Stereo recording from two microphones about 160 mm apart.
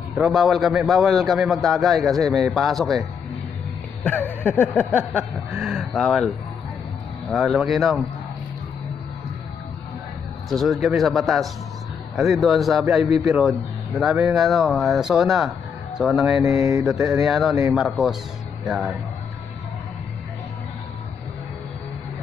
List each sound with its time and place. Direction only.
0.2 s a man's voice: centre (ahead or behind)
4.0 s a sound: 10° left (ahead or behind)
5.8 s a man's voice: centre (ahead or behind)
10.5 s a man's voice: centre (ahead or behind)
16.4 s mantra: 20° right (ahead or behind)
17.2 s a man's voice: centre (ahead or behind)